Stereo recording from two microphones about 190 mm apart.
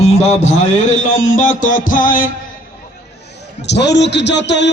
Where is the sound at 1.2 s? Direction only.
40° left (ahead or behind).